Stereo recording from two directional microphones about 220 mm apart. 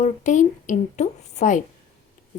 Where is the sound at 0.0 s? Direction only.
35° left (ahead or behind).